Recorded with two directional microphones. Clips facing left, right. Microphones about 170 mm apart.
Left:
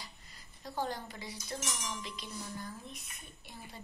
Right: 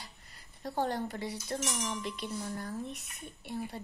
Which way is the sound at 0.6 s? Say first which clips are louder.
Right 5 dB; 65° right (ahead or behind).